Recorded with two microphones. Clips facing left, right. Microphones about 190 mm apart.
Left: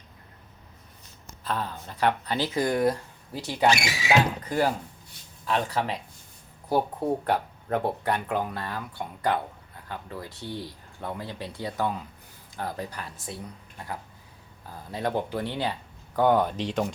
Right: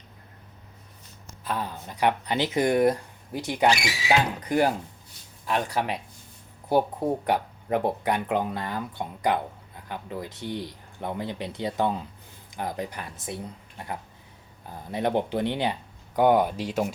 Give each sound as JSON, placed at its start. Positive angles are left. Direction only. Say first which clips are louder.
{"t": 1.5, "sound": "speech", "louder": "even", "side_deg": -15}
{"t": 14.7, "sound": "speech", "louder": "right 3 dB", "side_deg": -20}